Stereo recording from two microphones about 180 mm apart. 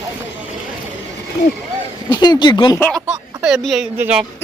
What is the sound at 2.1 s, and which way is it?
Speech, 25° left (ahead or behind).